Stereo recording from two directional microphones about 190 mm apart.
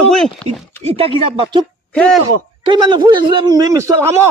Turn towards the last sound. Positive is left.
turn(degrees=-15)  # may be behind; listen again after turning